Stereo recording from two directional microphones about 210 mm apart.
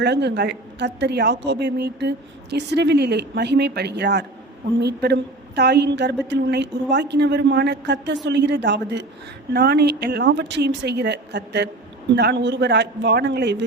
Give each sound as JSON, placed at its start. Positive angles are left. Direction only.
{"t": 0.0, "sound": "a woman's voice", "side_deg": -55}